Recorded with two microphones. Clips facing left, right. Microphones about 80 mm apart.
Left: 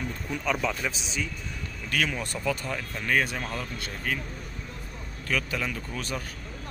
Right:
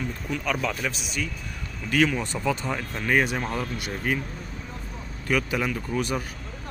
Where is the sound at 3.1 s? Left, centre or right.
Centre.